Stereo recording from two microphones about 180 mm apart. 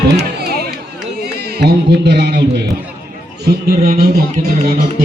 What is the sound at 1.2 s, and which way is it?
Speech, 60° right (ahead or behind).